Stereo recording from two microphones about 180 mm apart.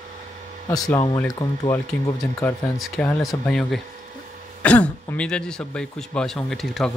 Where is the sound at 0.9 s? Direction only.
15° left (ahead or behind).